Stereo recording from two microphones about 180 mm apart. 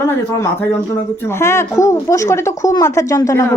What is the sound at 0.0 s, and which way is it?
Speech, 15° left (ahead or behind).